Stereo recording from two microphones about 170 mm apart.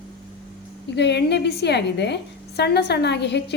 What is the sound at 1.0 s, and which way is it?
A woman's voice, 85° left.